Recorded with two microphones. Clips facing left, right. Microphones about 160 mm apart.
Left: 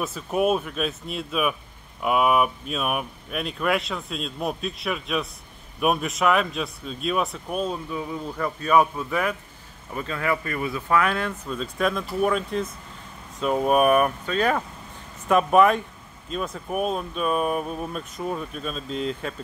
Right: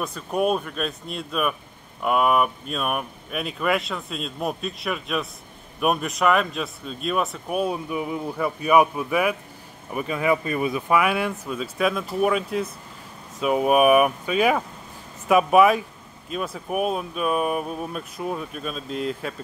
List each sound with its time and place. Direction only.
0.0 s speech: 5° left (ahead or behind)